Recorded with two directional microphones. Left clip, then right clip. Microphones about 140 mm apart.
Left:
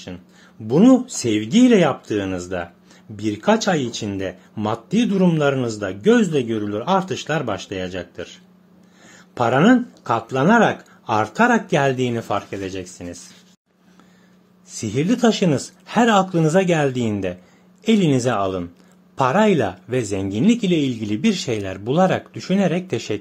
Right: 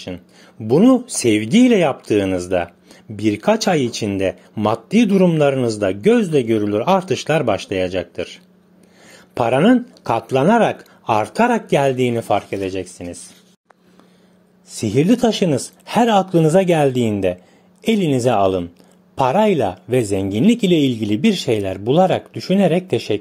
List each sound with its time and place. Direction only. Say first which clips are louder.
0.7 s speech: right 1 dB; 45° right (ahead or behind); by 13.3 s 30° right (ahead or behind)
14.7 s a woman's voice: right 6 dB; 35° right (ahead or behind)